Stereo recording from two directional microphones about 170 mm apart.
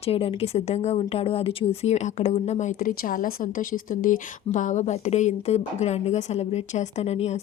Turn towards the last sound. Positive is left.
turn(degrees=40)  # may be behind; listen again after turning